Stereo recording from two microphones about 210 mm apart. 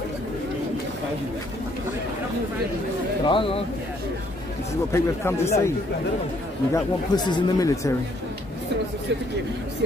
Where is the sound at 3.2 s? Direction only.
25° left (ahead or behind).